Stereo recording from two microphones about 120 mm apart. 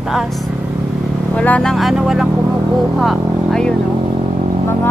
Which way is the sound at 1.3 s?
10° left (ahead or behind).